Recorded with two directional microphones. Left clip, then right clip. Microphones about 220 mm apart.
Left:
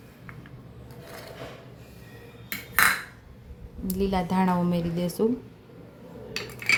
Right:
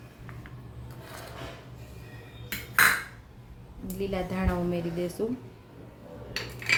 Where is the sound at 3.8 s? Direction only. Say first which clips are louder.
Left 5 dB; 35° left (ahead or behind).